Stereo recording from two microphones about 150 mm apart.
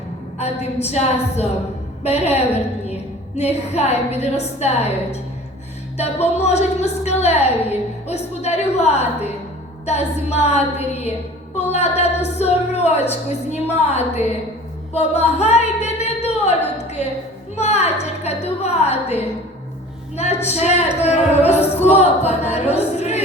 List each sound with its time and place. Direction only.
0.3 s a woman's voice: 45° left (ahead or behind)
14.9 s a sound: 45° left (ahead or behind)
17.5 s music: 45° left (ahead or behind)
18.0 s a woman's voice: 45° left (ahead or behind)